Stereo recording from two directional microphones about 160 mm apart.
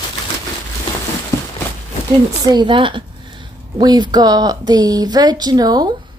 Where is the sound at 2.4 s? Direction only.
30° right (ahead or behind).